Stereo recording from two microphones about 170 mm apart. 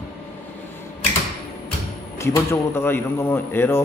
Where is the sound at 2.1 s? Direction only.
15° left (ahead or behind).